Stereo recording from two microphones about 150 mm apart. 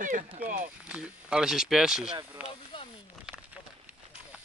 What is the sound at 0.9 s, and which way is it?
Speech, 5° right (ahead or behind).